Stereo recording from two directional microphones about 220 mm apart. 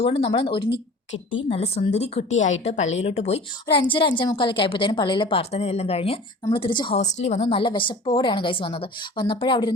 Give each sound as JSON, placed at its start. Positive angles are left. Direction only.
{"t": 0.0, "sound": "a woman's voice", "side_deg": 25}
{"t": 1.1, "sound": "a woman's voice", "side_deg": 60}
{"t": 1.5, "sound": "a woman's voice", "side_deg": 25}